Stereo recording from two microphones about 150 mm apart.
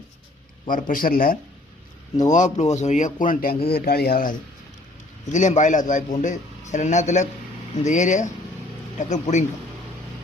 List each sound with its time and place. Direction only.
0.6 s speech: 60° left (ahead or behind)
2.3 s a man's voice: 55° left (ahead or behind); by 4.4 s 75° left (ahead or behind)
5.2 s a man's voice: 55° left (ahead or behind)